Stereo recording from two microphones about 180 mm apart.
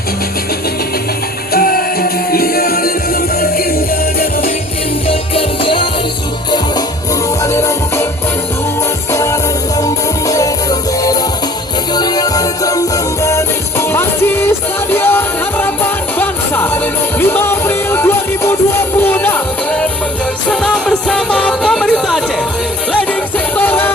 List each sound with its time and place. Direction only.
1.5 s music: 55° left (ahead or behind)
5.0 s music: 30° left (ahead or behind)
7.4 s music: 15° left (ahead or behind)
9.1 s music: 15° left (ahead or behind)
23.6 s music: 10° left (ahead or behind)